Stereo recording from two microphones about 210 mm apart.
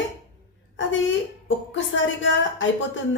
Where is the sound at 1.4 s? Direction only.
65° left (ahead or behind).